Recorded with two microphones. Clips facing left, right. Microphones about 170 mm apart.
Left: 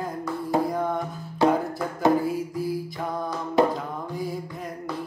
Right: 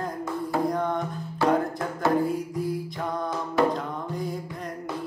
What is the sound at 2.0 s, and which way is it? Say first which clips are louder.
Music: left 3 dB; 20° left (ahead or behind).